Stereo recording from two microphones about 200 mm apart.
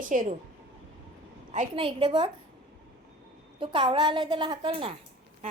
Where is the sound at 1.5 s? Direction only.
25° right (ahead or behind).